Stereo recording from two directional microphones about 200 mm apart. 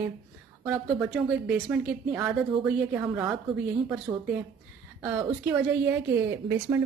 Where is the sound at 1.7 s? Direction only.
5° right (ahead or behind).